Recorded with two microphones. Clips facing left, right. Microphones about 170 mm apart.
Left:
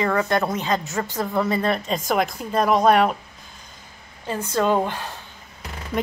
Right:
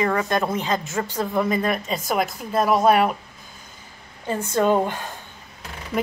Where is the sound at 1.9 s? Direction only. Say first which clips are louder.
Left 1 dB; centre (ahead or behind).